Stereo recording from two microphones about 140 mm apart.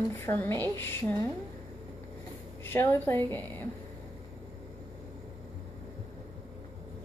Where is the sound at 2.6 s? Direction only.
15° left (ahead or behind).